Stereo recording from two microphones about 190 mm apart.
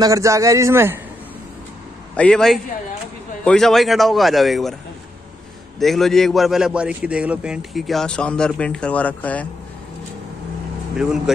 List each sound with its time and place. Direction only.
0.0 s a man's voice: 15° right (ahead or behind)
2.1 s a man's voice: 5° left (ahead or behind)
5.8 s a man's voice: centre (ahead or behind)
11.0 s a man's voice: 5° right (ahead or behind)